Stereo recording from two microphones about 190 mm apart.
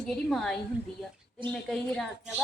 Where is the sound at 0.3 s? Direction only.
Centre (ahead or behind).